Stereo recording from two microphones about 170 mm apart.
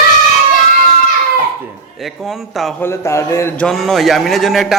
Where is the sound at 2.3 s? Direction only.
Centre (ahead or behind).